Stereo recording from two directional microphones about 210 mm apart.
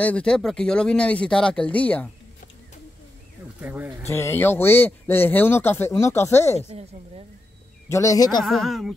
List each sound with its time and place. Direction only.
0.0 s speech: 5° left (ahead or behind)
3.6 s speech: 10° right (ahead or behind)
4.1 s speech: 10° left (ahead or behind)
7.9 s speech: 15° left (ahead or behind)
8.5 s speech: centre (ahead or behind)